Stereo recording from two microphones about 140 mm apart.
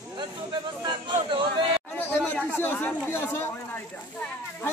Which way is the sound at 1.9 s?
15° left (ahead or behind).